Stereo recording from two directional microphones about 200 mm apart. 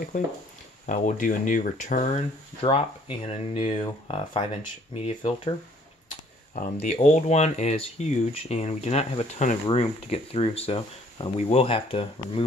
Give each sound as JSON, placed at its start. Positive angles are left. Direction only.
{"t": 0.1, "sound": "speech", "side_deg": 40}
{"t": 6.5, "sound": "speech", "side_deg": 40}